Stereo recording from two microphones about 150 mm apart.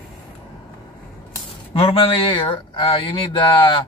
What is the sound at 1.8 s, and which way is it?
Speech, 40° left (ahead or behind).